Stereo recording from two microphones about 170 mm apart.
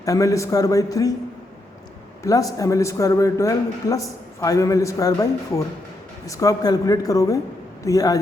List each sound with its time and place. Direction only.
0.0 s a man's voice: 20° left (ahead or behind)
2.2 s a man's voice: 20° left (ahead or behind)